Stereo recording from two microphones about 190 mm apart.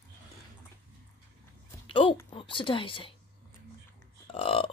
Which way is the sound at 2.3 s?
25° left (ahead or behind).